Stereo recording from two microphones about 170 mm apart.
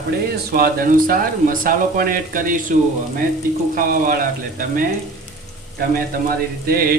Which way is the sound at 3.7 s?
55° right (ahead or behind).